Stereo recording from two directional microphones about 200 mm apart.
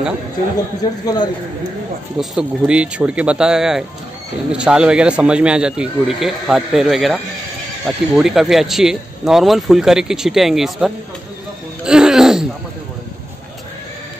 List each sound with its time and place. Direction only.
1.0 s speech: 20° left (ahead or behind)
2.1 s speech: 5° right (ahead or behind)
11.8 s laughter: 5° right (ahead or behind)